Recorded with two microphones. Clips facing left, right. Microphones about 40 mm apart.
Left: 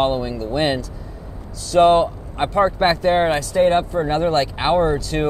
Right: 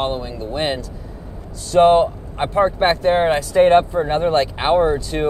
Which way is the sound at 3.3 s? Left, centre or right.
Centre.